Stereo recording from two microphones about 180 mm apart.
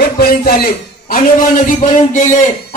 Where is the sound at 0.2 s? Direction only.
60° left (ahead or behind).